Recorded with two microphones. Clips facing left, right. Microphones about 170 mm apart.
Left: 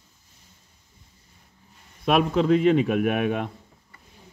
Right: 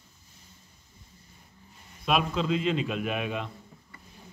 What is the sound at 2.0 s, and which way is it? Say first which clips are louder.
Speech: left 6 dB; 60° left (ahead or behind).